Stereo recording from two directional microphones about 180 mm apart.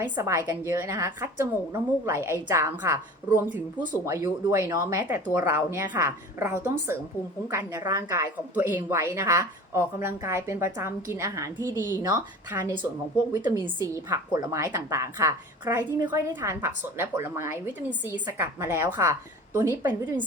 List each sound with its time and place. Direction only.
0.0 s a woman's voice: 15° right (ahead or behind)
11.7 s speech: 20° left (ahead or behind)
12.1 s a woman's voice: 10° right (ahead or behind)
13.3 s a woman's voice: 20° right (ahead or behind)